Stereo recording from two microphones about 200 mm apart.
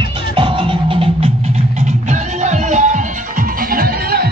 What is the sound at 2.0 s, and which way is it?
Music, 35° right (ahead or behind).